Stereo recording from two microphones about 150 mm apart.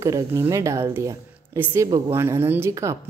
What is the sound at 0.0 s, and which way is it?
A woman's voice, 20° right (ahead or behind).